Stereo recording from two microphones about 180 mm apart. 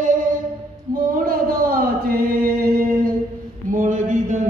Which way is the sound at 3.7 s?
45° right (ahead or behind).